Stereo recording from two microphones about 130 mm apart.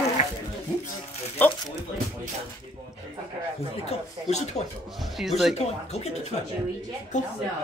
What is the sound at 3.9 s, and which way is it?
Chuckle, 60° left (ahead or behind).